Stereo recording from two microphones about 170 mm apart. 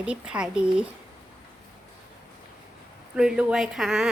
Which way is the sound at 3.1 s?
5° right (ahead or behind).